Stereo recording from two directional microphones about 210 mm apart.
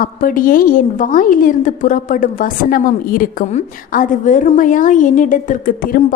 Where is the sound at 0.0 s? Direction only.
40° left (ahead or behind).